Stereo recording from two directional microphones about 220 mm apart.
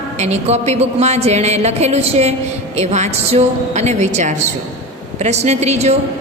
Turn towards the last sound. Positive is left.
turn(degrees=-30)  # may be behind; listen again after turning